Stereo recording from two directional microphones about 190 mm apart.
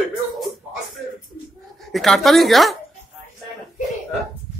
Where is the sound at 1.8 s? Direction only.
Centre (ahead or behind).